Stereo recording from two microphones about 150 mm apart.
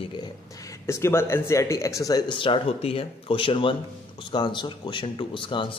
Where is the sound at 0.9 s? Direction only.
15° left (ahead or behind).